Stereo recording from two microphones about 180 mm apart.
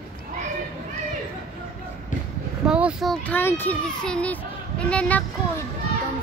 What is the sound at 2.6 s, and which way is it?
A child's voice, 5° right (ahead or behind).